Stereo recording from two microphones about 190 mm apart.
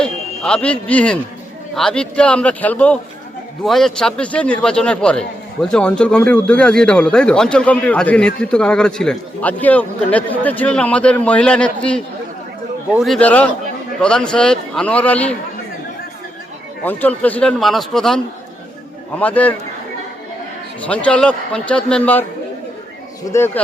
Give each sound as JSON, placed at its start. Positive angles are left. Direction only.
{"t": 0.0, "sound": "a man's voice", "side_deg": 5}
{"t": 16.8, "sound": "speech", "side_deg": 10}
{"t": 19.2, "sound": "a man's voice", "side_deg": 10}
{"t": 20.8, "sound": "a man's voice", "side_deg": 5}